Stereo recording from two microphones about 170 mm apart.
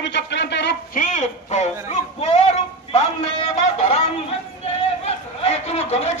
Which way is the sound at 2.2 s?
40° left (ahead or behind).